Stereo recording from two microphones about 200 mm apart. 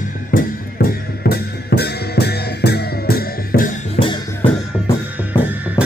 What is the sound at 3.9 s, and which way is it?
Music, 25° left (ahead or behind).